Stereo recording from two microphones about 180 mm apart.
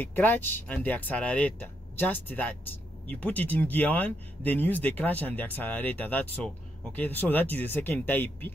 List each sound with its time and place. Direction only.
0.0 s speech: 10° left (ahead or behind)